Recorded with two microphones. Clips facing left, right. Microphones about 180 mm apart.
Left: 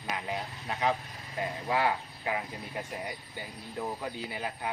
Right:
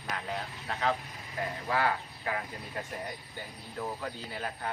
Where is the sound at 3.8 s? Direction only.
15° left (ahead or behind).